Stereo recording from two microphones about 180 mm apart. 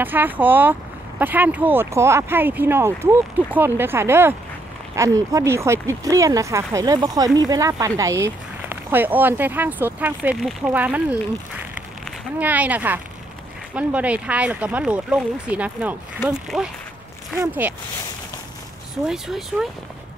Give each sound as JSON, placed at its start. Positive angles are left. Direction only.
{"t": 0.0, "sound": "speech", "side_deg": -10}
{"t": 11.7, "sound": "a sound", "side_deg": -10}
{"t": 13.7, "sound": "speech", "side_deg": -5}
{"t": 19.0, "sound": "speech", "side_deg": 0}